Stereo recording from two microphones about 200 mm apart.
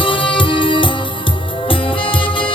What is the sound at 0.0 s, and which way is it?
Music, 25° left (ahead or behind).